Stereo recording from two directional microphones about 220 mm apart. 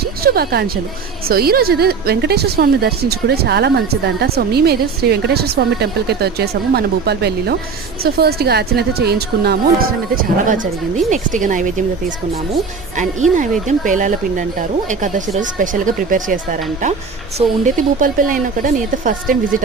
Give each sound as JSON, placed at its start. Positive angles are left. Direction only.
{"t": 0.0, "sound": "a woman's voice", "side_deg": -45}
{"t": 13.7, "sound": "speech", "side_deg": -35}